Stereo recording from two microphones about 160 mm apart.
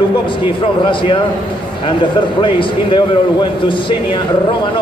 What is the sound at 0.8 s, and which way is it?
Speech, 30° left (ahead or behind).